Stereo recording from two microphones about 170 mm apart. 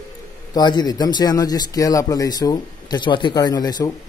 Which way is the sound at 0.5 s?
25° left (ahead or behind).